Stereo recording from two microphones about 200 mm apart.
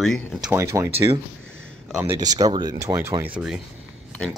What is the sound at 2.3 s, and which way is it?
Speech, 20° right (ahead or behind).